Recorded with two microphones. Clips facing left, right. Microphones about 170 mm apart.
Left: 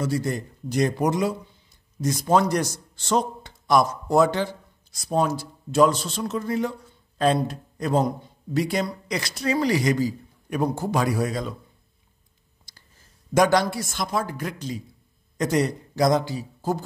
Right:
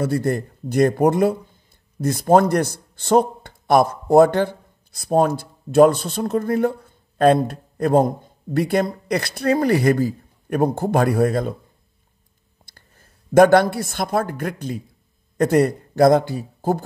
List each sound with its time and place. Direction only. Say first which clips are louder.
0.0 s speech: right 5 dB; 55° right (ahead or behind)
12.6 s a man's voice: right 4 dB; 55° right (ahead or behind)